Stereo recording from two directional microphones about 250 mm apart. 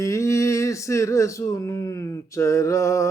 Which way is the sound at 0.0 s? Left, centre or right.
Centre.